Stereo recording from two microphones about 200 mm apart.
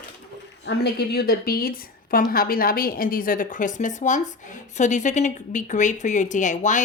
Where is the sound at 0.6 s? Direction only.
55° left (ahead or behind).